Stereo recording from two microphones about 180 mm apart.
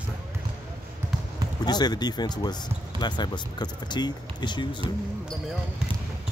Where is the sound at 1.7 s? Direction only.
20° left (ahead or behind).